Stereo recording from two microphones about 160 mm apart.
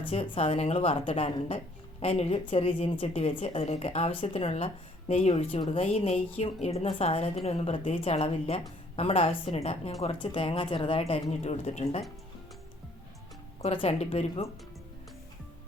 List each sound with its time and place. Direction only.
0.1 s a woman's voice: 40° left (ahead or behind)
13.8 s a woman's voice: 40° left (ahead or behind)